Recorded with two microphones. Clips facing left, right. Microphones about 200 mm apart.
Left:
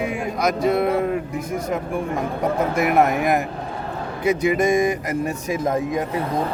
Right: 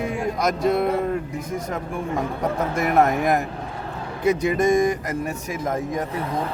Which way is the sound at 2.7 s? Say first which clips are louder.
Even; 5° left (ahead or behind).